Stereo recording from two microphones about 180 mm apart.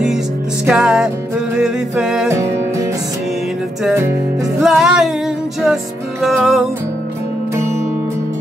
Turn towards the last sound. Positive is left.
turn(degrees=-15)  # may be behind; listen again after turning